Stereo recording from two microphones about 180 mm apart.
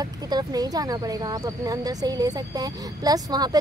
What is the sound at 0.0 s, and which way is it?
Speech, 20° right (ahead or behind).